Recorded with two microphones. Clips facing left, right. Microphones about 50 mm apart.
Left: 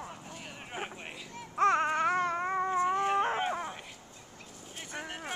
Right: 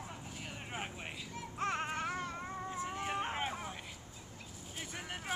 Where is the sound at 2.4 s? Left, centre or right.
Left.